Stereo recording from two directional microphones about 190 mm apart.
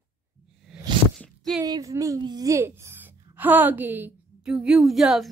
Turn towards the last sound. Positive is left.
turn(degrees=0)  # may be behind; listen again after turning